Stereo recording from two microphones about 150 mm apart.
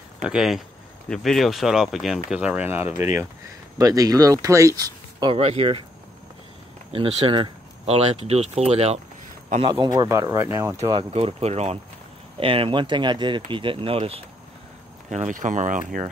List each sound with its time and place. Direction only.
0.2 s speech: 5° right (ahead or behind); by 5.3 s 25° right (ahead or behind)
5.3 s speech: 40° right (ahead or behind)
6.9 s speech: 35° right (ahead or behind)
9.7 s speech: 25° right (ahead or behind)
10.9 s speech: 35° right (ahead or behind)
15.0 s speech: 55° right (ahead or behind)